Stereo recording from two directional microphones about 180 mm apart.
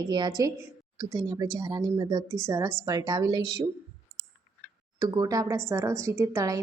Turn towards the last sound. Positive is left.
turn(degrees=-15)  # may be behind; listen again after turning